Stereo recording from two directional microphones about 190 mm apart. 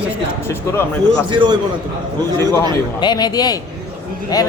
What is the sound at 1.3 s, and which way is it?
Speech, 25° right (ahead or behind).